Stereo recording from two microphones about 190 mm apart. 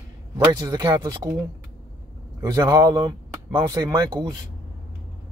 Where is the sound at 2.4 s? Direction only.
20° right (ahead or behind).